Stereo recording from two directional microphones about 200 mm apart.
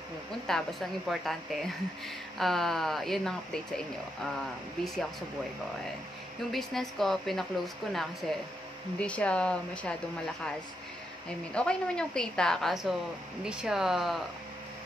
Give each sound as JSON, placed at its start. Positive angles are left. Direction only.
{"t": 0.5, "sound": "a woman's voice", "side_deg": 0}
{"t": 6.5, "sound": "a woman's voice", "side_deg": 0}